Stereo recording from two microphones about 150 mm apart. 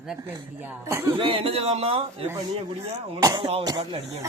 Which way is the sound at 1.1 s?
35° right (ahead or behind).